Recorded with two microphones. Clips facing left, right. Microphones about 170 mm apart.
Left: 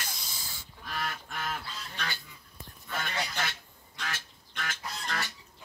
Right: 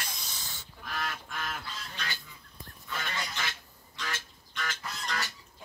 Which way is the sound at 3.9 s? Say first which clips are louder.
Even; 60° left (ahead or behind).